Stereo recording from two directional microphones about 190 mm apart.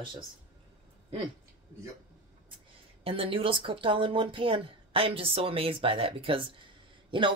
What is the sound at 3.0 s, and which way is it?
Speech, 30° right (ahead or behind).